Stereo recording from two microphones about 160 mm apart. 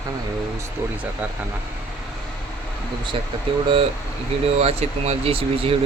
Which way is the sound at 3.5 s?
35° right (ahead or behind).